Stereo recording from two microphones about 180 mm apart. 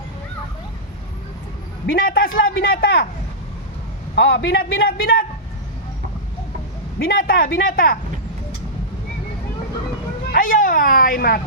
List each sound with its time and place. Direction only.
1.9 s a man's voice: 55° left (ahead or behind)
4.1 s a man's voice: 70° left (ahead or behind)
7.0 s a man's voice: 55° left (ahead or behind)
10.3 s speech: 50° left (ahead or behind)